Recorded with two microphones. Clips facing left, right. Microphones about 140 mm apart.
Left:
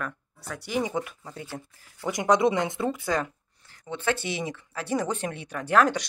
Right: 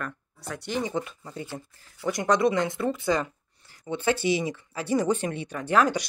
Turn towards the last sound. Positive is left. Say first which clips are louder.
# left 1 dB
turn(degrees=0)  # may be behind; listen again after turning